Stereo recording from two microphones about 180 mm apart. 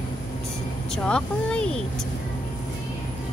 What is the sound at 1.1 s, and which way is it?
Speech, 5° left (ahead or behind).